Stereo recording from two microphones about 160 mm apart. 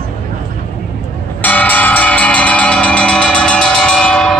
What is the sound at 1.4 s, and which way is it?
Music, 10° left (ahead or behind).